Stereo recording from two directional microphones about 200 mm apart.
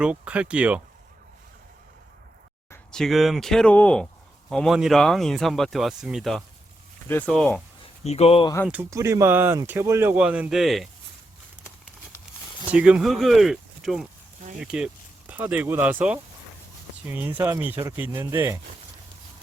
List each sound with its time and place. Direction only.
0.0 s speech: 5° right (ahead or behind)
2.6 s speech: 5° left (ahead or behind)
8.0 s speech: 30° left (ahead or behind)
8.6 s speech: 10° right (ahead or behind)
12.7 s speech: 5° right (ahead or behind)